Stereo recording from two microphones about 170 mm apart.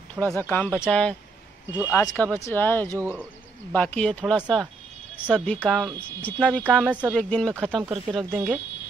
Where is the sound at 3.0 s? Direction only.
15° right (ahead or behind).